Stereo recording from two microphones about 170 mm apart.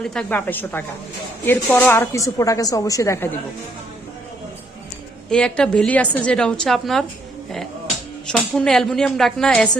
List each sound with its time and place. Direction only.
0.0 s a woman's voice: 5° left (ahead or behind)
5.3 s a woman's voice: 5° left (ahead or behind)
8.3 s a woman's voice: 5° left (ahead or behind)